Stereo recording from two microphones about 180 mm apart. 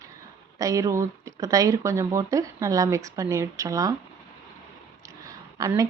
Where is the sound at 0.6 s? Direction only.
20° right (ahead or behind).